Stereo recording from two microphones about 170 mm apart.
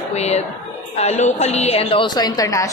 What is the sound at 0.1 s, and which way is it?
A woman's voice, 40° left (ahead or behind).